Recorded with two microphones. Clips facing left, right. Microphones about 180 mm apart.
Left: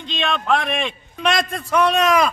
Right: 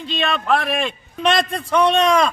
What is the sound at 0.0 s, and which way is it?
A man's voice, 5° right (ahead or behind).